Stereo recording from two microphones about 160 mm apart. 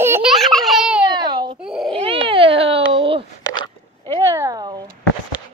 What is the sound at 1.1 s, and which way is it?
Babbling, 25° right (ahead or behind).